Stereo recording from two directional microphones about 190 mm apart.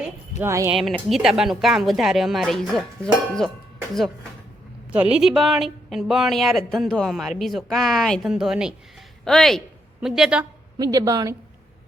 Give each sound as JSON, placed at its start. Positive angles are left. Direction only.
{"t": 0.3, "sound": "speech", "side_deg": -15}
{"t": 0.7, "sound": "speech", "side_deg": 0}
{"t": 4.9, "sound": "speech", "side_deg": -5}
{"t": 10.8, "sound": "speech", "side_deg": -20}